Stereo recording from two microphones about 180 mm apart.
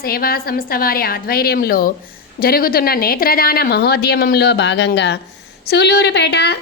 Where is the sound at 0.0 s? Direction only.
55° left (ahead or behind).